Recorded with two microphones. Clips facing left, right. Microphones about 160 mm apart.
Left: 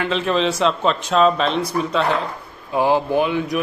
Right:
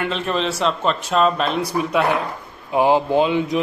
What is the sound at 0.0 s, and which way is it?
A man's voice, centre (ahead or behind).